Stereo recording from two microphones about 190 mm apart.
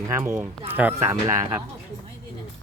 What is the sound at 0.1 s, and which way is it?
Speech, 15° right (ahead or behind).